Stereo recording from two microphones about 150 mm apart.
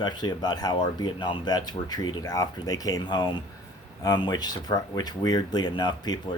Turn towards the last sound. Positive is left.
turn(degrees=30)  # may be behind; listen again after turning